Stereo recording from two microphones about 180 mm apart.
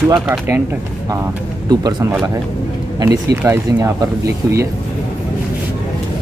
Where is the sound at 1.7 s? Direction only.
20° right (ahead or behind).